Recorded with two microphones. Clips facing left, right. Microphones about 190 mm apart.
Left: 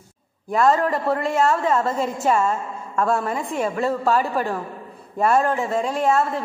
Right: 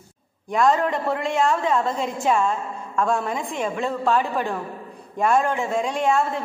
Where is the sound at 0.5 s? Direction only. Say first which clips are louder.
Left 1 dB; centre (ahead or behind).